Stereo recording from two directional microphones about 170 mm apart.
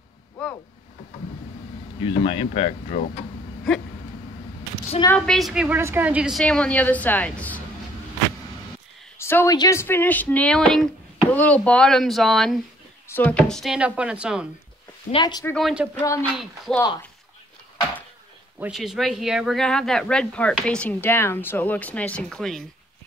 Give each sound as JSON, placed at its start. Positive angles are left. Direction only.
{"t": 2.0, "sound": "speech", "side_deg": 30}
{"t": 5.0, "sound": "a woman's voice", "side_deg": 5}
{"t": 6.4, "sound": "speech", "side_deg": 5}
{"t": 9.2, "sound": "speech", "side_deg": 15}
{"t": 15.0, "sound": "speech", "side_deg": 25}
{"t": 15.4, "sound": "speech", "side_deg": 5}
{"t": 16.0, "sound": "speech", "side_deg": 15}
{"t": 16.3, "sound": "speech", "side_deg": 0}
{"t": 18.6, "sound": "speech", "side_deg": 0}